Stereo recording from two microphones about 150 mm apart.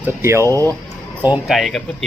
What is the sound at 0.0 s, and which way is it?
Speech, 15° right (ahead or behind).